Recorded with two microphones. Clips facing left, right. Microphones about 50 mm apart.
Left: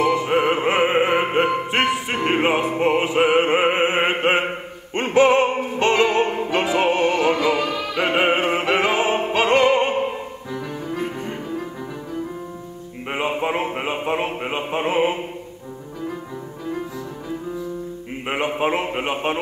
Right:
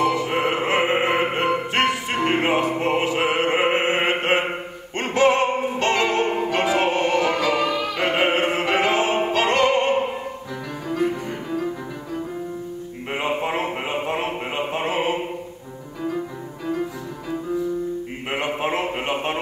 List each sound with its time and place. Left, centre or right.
0.0 s music: left
5.8 s opera: left
6.5 s music: left
7.9 s opera: left
9.3 s music: left
13.4 s a sound: left
14.7 s music: left
18.3 s a sound: left